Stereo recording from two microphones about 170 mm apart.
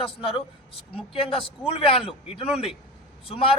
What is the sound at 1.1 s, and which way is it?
A man's voice, 30° left (ahead or behind).